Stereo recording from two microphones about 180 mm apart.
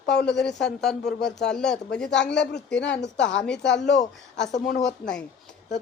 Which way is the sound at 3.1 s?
80° left.